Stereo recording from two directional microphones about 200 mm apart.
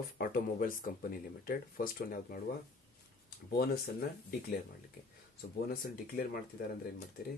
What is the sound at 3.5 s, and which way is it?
Speech, 50° left (ahead or behind).